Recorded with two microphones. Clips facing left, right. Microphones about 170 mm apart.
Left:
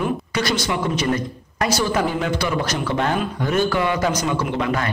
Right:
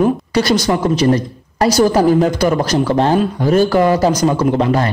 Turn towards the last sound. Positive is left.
turn(degrees=-35)  # may be behind; listen again after turning